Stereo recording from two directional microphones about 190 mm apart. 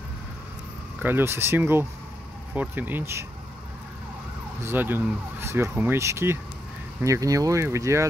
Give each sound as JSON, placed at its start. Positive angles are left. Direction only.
{"t": 1.0, "sound": "speech", "side_deg": -10}
{"t": 4.6, "sound": "speech", "side_deg": -10}